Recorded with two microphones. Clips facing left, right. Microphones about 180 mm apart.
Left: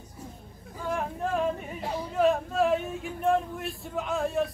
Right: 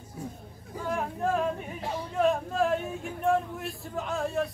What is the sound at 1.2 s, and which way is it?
Yodeling, centre (ahead or behind).